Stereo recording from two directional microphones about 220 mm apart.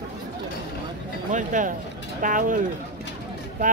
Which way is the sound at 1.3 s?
35° right (ahead or behind).